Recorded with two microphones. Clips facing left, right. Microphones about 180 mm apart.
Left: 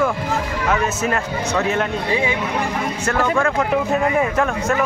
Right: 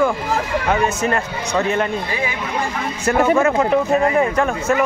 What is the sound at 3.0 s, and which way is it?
Speech, 10° right (ahead or behind).